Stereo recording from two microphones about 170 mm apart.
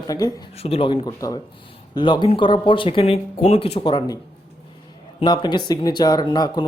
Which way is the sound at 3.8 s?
30° left (ahead or behind).